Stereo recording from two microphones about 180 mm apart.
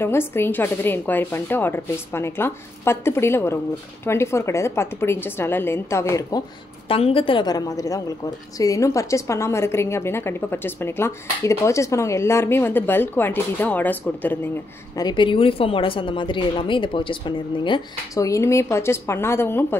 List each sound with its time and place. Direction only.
0.0 s a woman's voice: 15° left (ahead or behind)
6.9 s a woman's voice: 30° left (ahead or behind); by 14.5 s 10° left (ahead or behind)
15.0 s a woman's voice: 25° left (ahead or behind)